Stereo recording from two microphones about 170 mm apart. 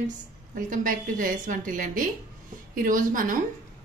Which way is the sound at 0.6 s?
50° right (ahead or behind).